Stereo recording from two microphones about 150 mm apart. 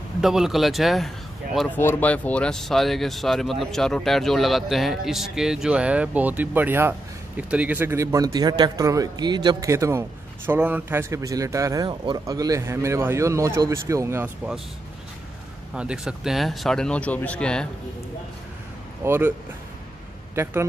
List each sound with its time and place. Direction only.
0.2 s speech: centre (ahead or behind)
1.8 s a man's voice: 15° left (ahead or behind); by 14.3 s 15° right (ahead or behind)
15.7 s a man's voice: 5° right (ahead or behind)
19.0 s a man's voice: 15° right (ahead or behind)